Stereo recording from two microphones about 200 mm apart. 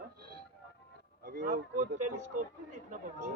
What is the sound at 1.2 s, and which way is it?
Speech, 45° right (ahead or behind).